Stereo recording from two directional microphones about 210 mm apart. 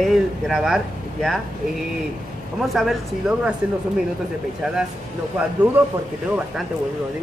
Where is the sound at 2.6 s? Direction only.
Centre (ahead or behind).